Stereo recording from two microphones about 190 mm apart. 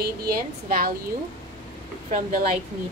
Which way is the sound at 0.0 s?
50° right (ahead or behind).